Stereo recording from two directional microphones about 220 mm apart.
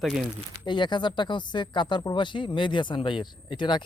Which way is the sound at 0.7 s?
20° left (ahead or behind).